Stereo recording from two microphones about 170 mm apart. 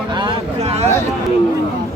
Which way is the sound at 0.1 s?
30° right (ahead or behind).